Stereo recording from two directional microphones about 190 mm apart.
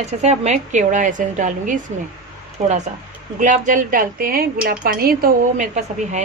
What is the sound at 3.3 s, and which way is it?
A woman's voice, 40° right (ahead or behind).